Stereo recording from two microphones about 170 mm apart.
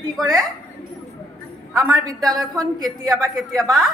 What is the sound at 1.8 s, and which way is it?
Speech, 20° right (ahead or behind).